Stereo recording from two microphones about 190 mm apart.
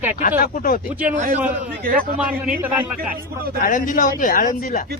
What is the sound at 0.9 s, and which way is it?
Speech, 10° right (ahead or behind).